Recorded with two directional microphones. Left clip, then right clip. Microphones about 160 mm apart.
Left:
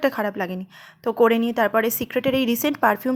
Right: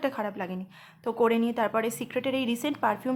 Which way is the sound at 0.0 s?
30° left (ahead or behind).